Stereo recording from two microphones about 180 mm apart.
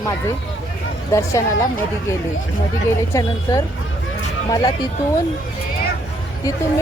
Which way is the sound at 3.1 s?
20° left (ahead or behind).